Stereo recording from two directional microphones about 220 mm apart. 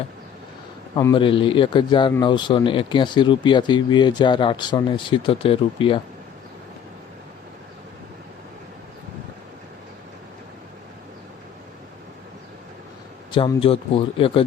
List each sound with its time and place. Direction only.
0.9 s a man's voice: 20° left (ahead or behind)
13.3 s a man's voice: 25° left (ahead or behind)